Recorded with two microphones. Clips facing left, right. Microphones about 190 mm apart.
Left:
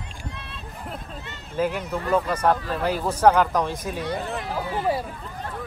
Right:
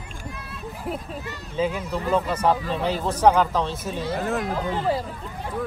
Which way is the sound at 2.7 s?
10° left (ahead or behind).